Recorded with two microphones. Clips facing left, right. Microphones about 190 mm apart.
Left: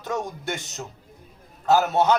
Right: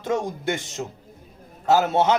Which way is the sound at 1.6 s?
25° right (ahead or behind).